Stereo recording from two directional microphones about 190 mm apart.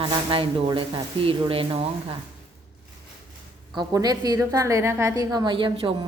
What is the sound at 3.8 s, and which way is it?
A woman's voice, 20° right (ahead or behind).